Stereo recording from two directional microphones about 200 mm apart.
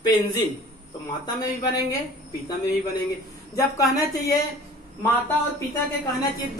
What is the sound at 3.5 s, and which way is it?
Speech, 15° left (ahead or behind).